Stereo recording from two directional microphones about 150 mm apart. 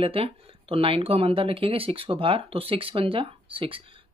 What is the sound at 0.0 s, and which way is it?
Speech, 40° right (ahead or behind).